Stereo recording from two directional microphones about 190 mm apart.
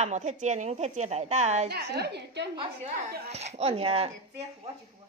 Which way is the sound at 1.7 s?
60° right (ahead or behind).